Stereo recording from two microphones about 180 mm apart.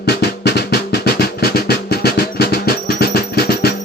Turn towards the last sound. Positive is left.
turn(degrees=60)  # may be behind; listen again after turning